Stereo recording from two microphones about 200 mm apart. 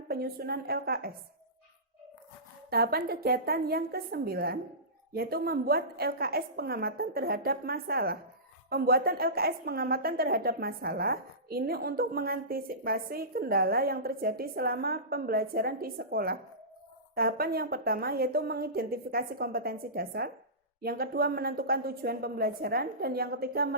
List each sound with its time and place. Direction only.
0.1 s a woman's voice: 50° right (ahead or behind)
2.6 s a woman's voice: 50° right (ahead or behind)